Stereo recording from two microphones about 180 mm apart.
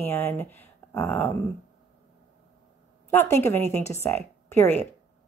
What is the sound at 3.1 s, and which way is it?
Speech, 10° left (ahead or behind).